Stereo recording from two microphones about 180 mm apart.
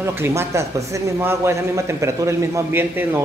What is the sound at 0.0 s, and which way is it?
A man's voice, 15° right (ahead or behind).